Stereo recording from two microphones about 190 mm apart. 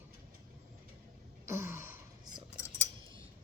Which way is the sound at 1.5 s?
15° right (ahead or behind).